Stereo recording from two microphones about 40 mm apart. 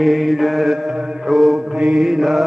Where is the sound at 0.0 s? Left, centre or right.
Centre.